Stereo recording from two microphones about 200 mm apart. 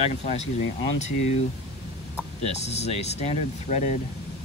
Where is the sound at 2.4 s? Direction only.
35° left (ahead or behind).